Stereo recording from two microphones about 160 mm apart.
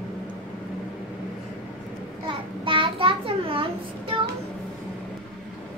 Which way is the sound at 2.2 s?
30° right (ahead or behind).